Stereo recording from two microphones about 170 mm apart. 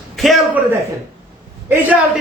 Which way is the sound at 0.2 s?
Centre (ahead or behind).